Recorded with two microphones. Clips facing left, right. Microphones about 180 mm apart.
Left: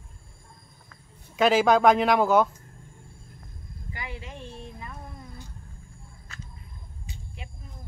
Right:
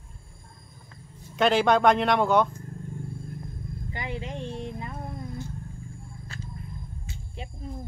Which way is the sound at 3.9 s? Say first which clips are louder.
Right 5 dB; 20° right (ahead or behind).